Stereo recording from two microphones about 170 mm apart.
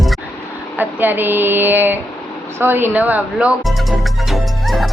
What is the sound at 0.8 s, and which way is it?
Speech, 10° right (ahead or behind).